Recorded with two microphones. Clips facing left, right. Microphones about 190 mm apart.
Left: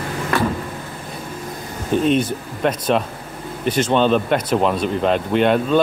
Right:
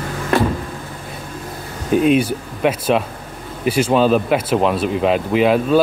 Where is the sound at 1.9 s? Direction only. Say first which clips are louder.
Right 3 dB; 10° right (ahead or behind).